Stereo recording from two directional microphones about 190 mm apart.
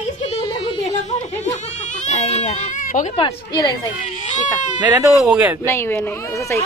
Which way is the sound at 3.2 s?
20° left (ahead or behind).